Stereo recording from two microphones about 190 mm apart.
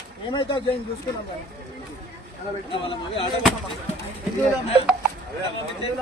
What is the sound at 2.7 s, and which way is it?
Speech, 25° left (ahead or behind).